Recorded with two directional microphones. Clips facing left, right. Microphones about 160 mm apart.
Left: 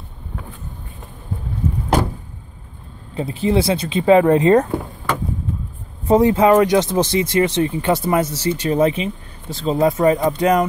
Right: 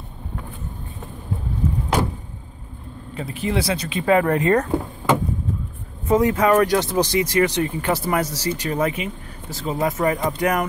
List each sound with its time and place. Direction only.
3.2 s speech: 30° left (ahead or behind)
6.0 s speech: 30° left (ahead or behind)